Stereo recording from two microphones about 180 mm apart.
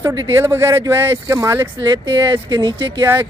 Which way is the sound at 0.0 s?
20° right (ahead or behind).